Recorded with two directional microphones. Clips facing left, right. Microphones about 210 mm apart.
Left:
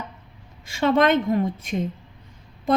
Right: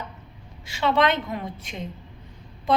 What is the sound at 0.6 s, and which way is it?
A woman's voice, 50° left (ahead or behind).